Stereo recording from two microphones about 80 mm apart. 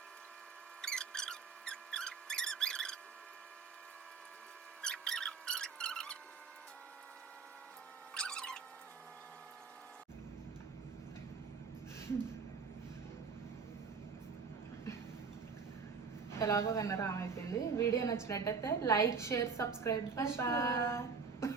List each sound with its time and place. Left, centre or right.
0.8 s mouse: centre
4.8 s mouse: centre
8.1 s cat: centre
16.4 s a woman's voice: left